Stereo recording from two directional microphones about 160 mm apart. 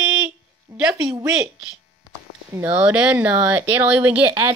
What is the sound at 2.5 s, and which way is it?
A woman's voice, 10° right (ahead or behind).